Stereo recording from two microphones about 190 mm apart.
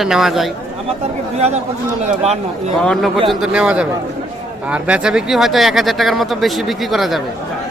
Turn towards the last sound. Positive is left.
turn(degrees=0)  # may be behind; listen again after turning